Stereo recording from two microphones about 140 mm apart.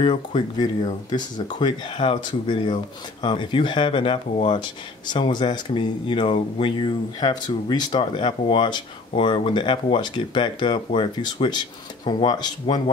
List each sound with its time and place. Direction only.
0.0 s speech: 35° left (ahead or behind)